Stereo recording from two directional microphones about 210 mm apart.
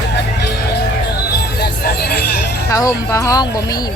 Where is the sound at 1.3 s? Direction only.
50° left (ahead or behind).